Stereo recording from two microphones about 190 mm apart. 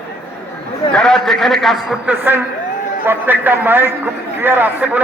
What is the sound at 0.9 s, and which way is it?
A man's voice, 5° left (ahead or behind).